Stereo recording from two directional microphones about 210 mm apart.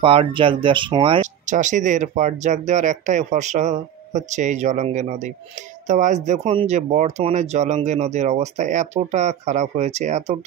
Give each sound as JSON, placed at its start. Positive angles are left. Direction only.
{"t": 0.0, "sound": "speech", "side_deg": -25}
{"t": 1.2, "sound": "speech", "side_deg": -35}